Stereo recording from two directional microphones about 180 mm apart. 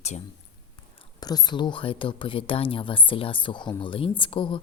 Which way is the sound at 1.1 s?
20° left (ahead or behind).